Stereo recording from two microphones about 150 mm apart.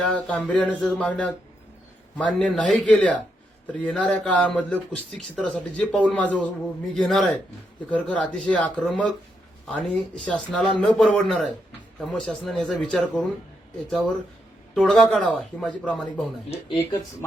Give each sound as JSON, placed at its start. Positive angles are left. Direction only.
{"t": 0.0, "sound": "speech", "side_deg": 5}
{"t": 14.8, "sound": "speech", "side_deg": 0}
{"t": 16.5, "sound": "speech", "side_deg": 35}